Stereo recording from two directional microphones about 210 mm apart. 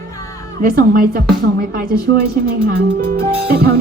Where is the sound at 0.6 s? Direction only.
45° right (ahead or behind).